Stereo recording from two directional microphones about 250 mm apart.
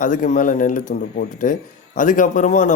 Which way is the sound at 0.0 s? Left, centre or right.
Left.